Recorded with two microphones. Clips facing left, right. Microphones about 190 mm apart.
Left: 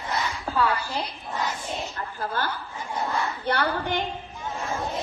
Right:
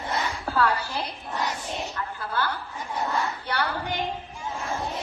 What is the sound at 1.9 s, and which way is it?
Speech, 40° left (ahead or behind).